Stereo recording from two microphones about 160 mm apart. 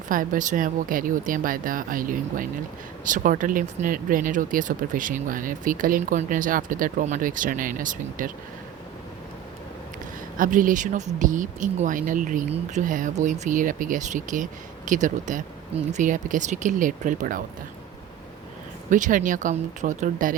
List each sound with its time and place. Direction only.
0.1 s speech: 55° right (ahead or behind)
10.3 s speech: 60° right (ahead or behind)
18.9 s speech: 55° right (ahead or behind)